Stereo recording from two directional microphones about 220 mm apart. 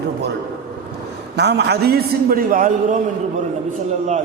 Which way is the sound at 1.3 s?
50° right (ahead or behind).